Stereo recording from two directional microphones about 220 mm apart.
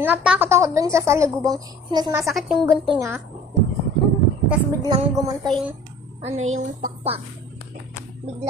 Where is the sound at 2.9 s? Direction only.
15° right (ahead or behind).